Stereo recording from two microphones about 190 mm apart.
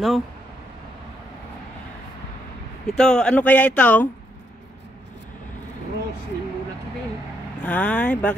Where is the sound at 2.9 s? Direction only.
5° left (ahead or behind).